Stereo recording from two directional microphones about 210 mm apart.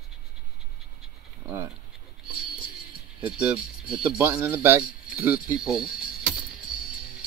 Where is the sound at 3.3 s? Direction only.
5° right (ahead or behind).